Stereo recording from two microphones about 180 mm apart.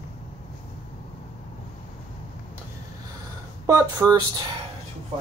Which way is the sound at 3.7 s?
20° right (ahead or behind).